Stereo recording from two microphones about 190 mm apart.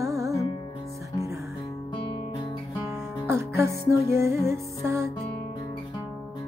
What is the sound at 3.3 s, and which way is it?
Music, 15° right (ahead or behind).